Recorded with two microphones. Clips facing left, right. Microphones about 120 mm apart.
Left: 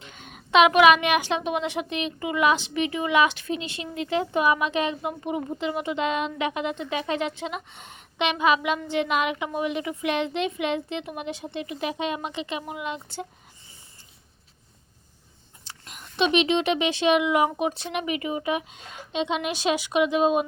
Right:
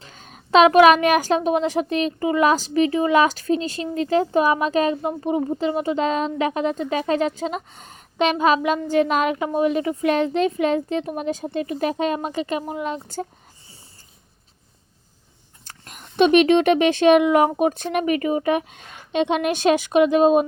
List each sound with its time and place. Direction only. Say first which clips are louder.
0.0 s a woman's voice: even; 35° right (ahead or behind)
15.6 s speech: right 2 dB; 45° right (ahead or behind)